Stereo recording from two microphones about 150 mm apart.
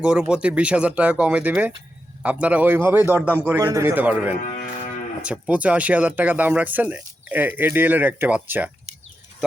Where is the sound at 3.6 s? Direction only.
20° right (ahead or behind).